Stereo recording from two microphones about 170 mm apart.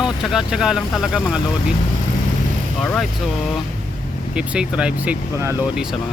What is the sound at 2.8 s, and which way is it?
Speech, 5° left (ahead or behind).